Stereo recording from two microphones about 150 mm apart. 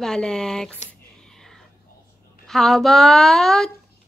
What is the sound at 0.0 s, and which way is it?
Speech, 5° left (ahead or behind).